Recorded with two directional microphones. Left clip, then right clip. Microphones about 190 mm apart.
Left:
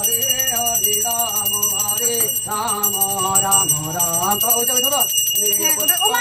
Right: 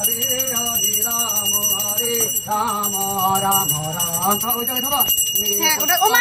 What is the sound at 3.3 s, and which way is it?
Music, 15° left (ahead or behind).